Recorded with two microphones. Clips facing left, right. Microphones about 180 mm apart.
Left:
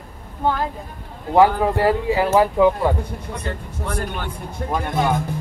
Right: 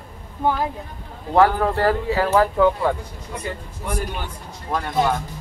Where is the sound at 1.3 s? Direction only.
15° left (ahead or behind).